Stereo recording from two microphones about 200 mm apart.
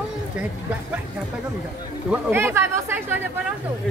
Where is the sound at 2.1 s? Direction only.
10° right (ahead or behind).